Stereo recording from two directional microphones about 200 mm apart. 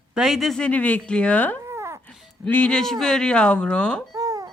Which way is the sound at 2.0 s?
Centre (ahead or behind).